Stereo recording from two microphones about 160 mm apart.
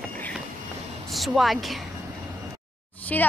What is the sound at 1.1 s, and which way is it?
Speech, centre (ahead or behind).